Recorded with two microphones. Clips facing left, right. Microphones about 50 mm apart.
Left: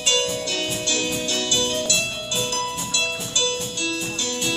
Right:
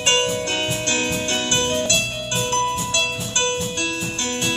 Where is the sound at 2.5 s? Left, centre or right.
Right.